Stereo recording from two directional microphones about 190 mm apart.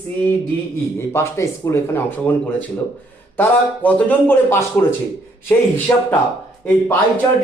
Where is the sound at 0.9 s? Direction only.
15° left (ahead or behind).